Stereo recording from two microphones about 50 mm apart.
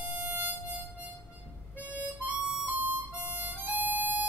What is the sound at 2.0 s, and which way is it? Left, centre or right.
Harmonica, right.